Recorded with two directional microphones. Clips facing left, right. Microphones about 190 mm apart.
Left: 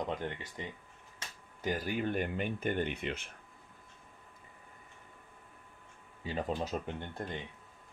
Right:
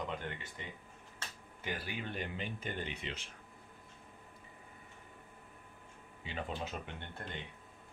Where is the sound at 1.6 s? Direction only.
40° left (ahead or behind).